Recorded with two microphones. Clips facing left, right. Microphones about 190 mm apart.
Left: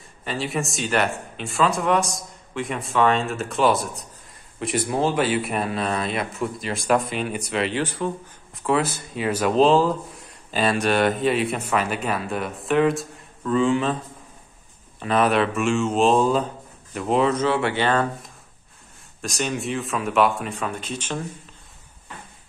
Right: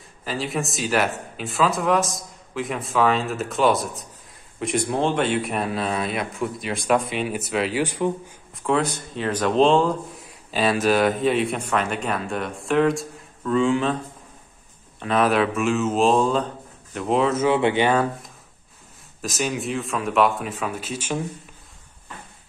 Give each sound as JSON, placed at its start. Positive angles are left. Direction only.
{"t": 0.2, "sound": "speech", "side_deg": 0}
{"t": 7.8, "sound": "speech", "side_deg": -15}
{"t": 8.5, "sound": "speech", "side_deg": 0}
{"t": 15.0, "sound": "speech", "side_deg": 0}
{"t": 17.5, "sound": "speech", "side_deg": -20}
{"t": 19.2, "sound": "speech", "side_deg": -5}